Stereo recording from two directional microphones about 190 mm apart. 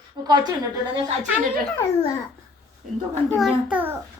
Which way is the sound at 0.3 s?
20° right (ahead or behind).